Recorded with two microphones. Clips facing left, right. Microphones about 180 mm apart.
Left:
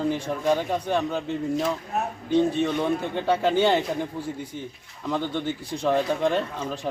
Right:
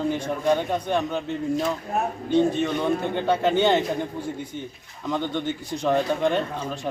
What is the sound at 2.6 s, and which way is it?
A man's voice, centre (ahead or behind).